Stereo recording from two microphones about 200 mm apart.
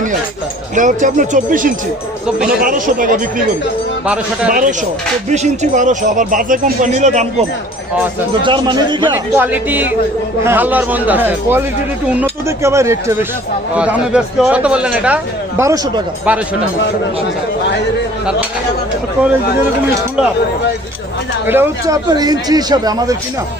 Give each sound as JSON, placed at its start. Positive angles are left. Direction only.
{"t": 0.8, "sound": "speech", "side_deg": -40}
{"t": 2.2, "sound": "a man's voice", "side_deg": -5}
{"t": 2.6, "sound": "speech", "side_deg": -40}
{"t": 4.0, "sound": "a man's voice", "side_deg": -5}
{"t": 5.3, "sound": "speech", "side_deg": -35}
{"t": 8.4, "sound": "speech", "side_deg": -25}
{"t": 9.1, "sound": "a man's voice", "side_deg": -10}
{"t": 21.4, "sound": "speech", "side_deg": -10}